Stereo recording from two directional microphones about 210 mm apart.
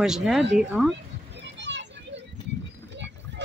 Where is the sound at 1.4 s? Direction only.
60° right (ahead or behind).